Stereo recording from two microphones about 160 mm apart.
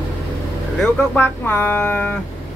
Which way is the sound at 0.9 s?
10° left (ahead or behind).